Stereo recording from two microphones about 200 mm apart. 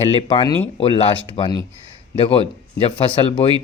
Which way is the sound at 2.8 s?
30° left (ahead or behind).